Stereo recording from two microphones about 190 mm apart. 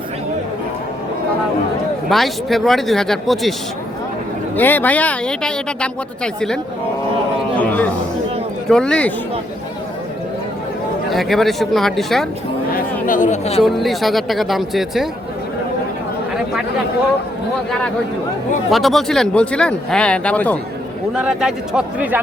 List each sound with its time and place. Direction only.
2.0 s speech: centre (ahead or behind)
4.5 s a man's voice: 10° left (ahead or behind)
11.1 s speech: centre (ahead or behind)
12.7 s speech: 45° left (ahead or behind)
13.7 s speech: centre (ahead or behind)
17.7 s speech: 5° left (ahead or behind)
21.1 s speech: 5° right (ahead or behind)